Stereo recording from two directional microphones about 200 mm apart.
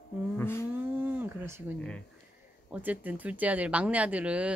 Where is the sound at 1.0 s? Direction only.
10° right (ahead or behind).